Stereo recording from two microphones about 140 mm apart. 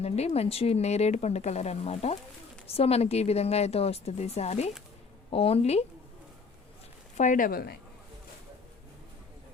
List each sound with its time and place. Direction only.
0.0 s a woman's voice: 50° left (ahead or behind)
7.2 s speech: 70° left (ahead or behind); by 7.7 s 85° left